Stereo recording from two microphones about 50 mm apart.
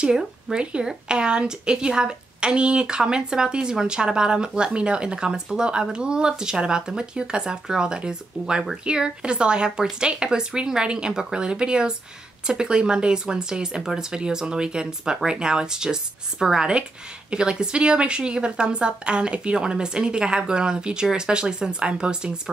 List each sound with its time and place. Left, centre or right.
0.0 s a woman's voice: centre